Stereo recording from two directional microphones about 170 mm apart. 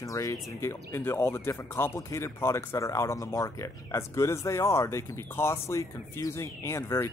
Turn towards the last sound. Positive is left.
turn(degrees=15)  # may be behind; listen again after turning